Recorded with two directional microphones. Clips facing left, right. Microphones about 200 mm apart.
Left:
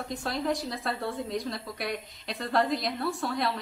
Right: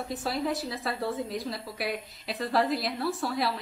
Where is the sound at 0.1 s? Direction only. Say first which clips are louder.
Even; 5° right (ahead or behind).